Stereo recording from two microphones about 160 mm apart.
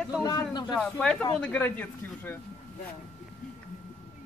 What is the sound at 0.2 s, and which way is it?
Speech, 25° left (ahead or behind).